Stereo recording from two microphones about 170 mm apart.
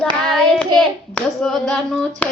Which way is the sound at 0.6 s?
5° left (ahead or behind).